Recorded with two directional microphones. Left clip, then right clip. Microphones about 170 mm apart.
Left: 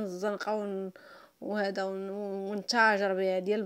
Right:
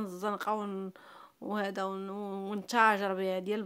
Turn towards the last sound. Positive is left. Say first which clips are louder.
# left 4 dB
turn(degrees=0)  # may be behind; listen again after turning